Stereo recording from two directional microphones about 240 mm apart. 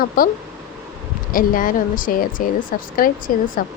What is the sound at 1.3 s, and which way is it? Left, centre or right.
Speech, left.